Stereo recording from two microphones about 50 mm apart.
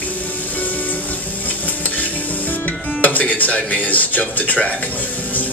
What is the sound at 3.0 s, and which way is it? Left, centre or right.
Speech, left.